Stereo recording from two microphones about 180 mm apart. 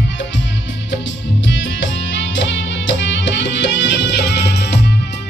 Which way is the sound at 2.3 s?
85° left.